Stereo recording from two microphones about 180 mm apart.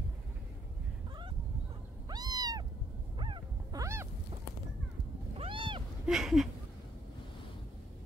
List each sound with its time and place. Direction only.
2.0 s cat: 20° right (ahead or behind)
3.2 s dog: 25° right (ahead or behind)
5.3 s cat: 30° right (ahead or behind)
6.0 s a sound: centre (ahead or behind)